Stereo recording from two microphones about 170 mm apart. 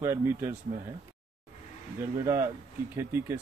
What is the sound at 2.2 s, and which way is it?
Speech, 15° right (ahead or behind).